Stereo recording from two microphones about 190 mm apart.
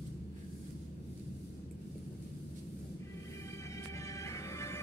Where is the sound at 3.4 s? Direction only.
15° left (ahead or behind).